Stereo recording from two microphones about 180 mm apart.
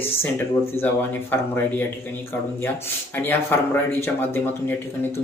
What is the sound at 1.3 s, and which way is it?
Speech, 10° left (ahead or behind).